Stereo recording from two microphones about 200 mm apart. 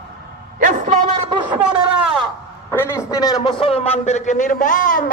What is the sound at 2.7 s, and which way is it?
A man's voice, 10° left (ahead or behind).